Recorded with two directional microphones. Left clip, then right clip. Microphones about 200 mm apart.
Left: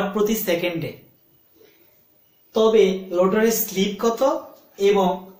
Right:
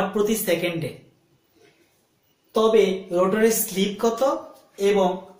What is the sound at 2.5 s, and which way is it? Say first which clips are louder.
Speech: left 2 dB; 10° left (ahead or behind).